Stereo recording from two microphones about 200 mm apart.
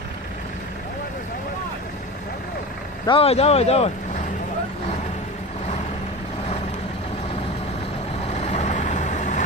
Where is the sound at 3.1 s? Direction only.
30° left (ahead or behind).